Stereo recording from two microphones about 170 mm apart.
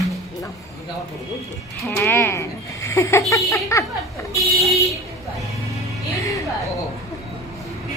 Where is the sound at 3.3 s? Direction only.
15° left (ahead or behind).